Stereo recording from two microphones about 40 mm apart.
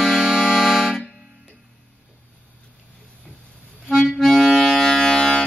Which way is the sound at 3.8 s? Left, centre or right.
Centre.